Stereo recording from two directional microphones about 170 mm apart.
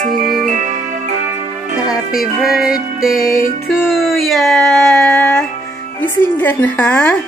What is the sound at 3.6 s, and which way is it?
Speech, centre (ahead or behind).